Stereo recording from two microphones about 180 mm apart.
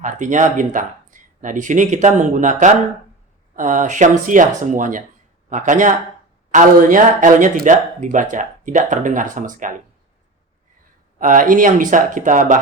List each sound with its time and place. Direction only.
0.0 s speech: 45° right (ahead or behind)
11.2 s speech: 50° right (ahead or behind)